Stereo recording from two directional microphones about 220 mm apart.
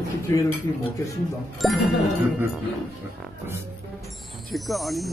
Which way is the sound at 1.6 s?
Centre (ahead or behind).